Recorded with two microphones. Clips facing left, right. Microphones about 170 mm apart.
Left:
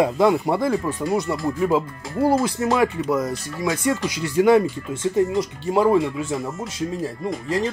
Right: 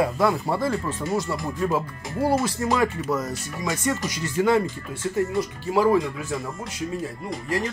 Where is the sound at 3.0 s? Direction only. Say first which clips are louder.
Left 4 dB; 10° left (ahead or behind).